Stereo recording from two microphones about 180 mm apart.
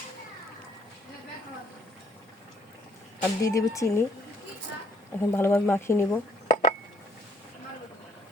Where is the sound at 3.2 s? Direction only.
20° left (ahead or behind).